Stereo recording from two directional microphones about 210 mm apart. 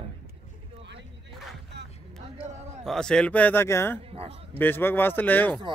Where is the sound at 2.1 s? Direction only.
30° right (ahead or behind).